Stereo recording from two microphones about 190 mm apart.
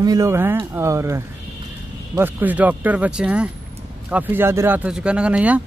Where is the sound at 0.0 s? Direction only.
20° right (ahead or behind).